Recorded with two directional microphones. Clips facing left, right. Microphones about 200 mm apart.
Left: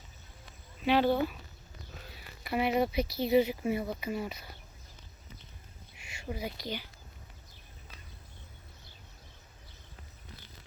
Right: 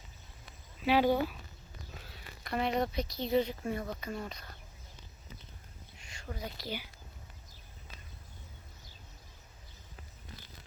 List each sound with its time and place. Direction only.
0.9 s speech: 10° right (ahead or behind)
2.0 s speech: 5° left (ahead or behind)
6.0 s a sound: 10° left (ahead or behind)
6.6 s speech: 10° right (ahead or behind)